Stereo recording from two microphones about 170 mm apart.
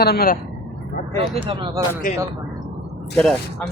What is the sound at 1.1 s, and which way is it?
Speech, 30° right (ahead or behind).